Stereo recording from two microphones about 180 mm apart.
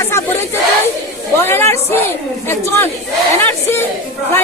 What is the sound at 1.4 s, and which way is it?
A woman's voice, 15° left (ahead or behind).